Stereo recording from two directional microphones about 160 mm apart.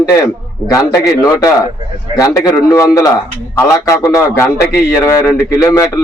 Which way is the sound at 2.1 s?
20° left (ahead or behind).